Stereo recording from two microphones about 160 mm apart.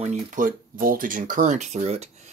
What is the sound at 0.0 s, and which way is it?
Speech, 50° right (ahead or behind).